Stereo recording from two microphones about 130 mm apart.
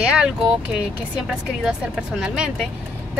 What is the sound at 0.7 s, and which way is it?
A woman's voice, 5° right (ahead or behind).